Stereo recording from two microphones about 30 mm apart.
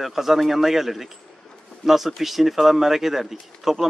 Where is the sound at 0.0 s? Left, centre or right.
Centre.